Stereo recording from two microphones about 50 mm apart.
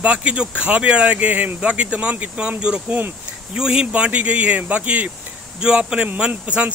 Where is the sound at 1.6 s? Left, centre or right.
Right.